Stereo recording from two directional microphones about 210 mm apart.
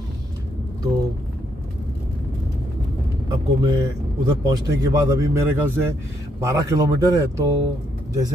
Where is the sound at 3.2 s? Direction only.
15° right (ahead or behind).